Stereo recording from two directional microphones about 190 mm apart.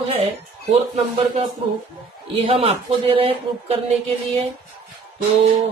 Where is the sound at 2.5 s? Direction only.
30° right (ahead or behind).